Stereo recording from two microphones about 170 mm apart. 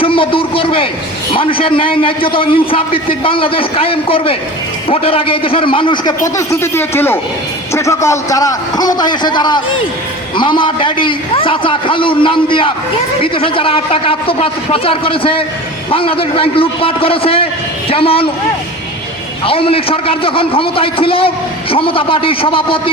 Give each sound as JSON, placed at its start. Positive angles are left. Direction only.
{"t": 0.0, "sound": "a man's voice", "side_deg": 30}
{"t": 6.2, "sound": "a man's voice", "side_deg": 20}
{"t": 19.5, "sound": "a man's voice", "side_deg": 35}